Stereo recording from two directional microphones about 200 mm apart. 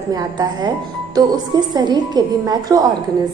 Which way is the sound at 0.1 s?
20° right (ahead or behind).